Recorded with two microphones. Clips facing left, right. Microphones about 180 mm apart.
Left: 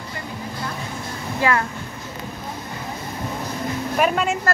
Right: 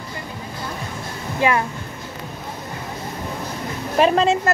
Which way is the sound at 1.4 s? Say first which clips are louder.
Right 2 dB; 20° right (ahead or behind).